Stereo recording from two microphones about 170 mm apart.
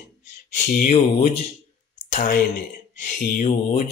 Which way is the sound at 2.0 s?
50° left (ahead or behind).